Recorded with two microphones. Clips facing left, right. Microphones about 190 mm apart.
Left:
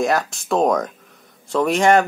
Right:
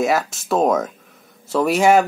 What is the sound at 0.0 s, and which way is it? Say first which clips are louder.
Speech: right 1 dB; centre (ahead or behind).